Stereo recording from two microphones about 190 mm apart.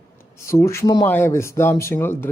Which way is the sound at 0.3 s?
15° left (ahead or behind).